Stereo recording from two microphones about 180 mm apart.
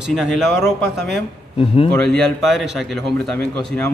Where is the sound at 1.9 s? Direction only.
5° left (ahead or behind).